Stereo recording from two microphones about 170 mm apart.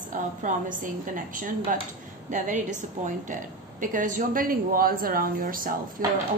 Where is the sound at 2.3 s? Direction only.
50° right (ahead or behind).